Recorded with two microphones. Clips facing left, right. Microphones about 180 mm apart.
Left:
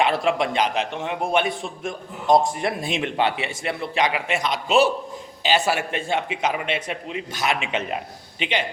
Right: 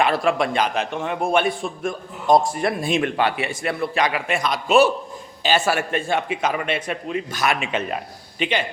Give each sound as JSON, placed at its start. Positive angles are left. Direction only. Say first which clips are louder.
{"t": 0.0, "sound": "a man's voice", "louder": "right 1 dB", "side_deg": 20}